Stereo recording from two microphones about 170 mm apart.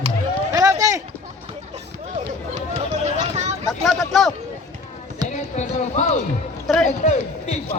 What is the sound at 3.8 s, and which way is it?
Speech, centre (ahead or behind).